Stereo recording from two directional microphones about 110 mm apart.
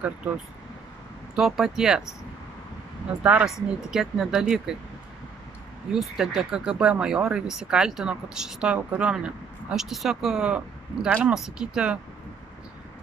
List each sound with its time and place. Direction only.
1.3 s speech: 5° right (ahead or behind)
5.9 s speech: 5° right (ahead or behind)